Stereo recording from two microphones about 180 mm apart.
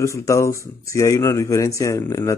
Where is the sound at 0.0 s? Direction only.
15° left (ahead or behind).